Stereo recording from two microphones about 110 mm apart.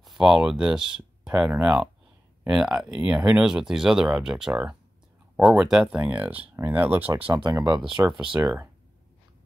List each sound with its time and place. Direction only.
0.0 s speech: 5° right (ahead or behind)
7.2 s speech: 45° right (ahead or behind)
7.9 s speech: 5° right (ahead or behind)